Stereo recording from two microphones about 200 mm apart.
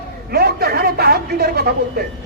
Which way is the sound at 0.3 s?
50° right (ahead or behind).